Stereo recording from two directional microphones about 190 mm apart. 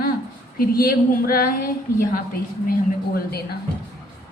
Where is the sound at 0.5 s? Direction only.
55° left (ahead or behind).